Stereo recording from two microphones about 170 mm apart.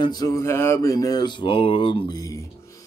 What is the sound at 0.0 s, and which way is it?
Speech, 20° left (ahead or behind).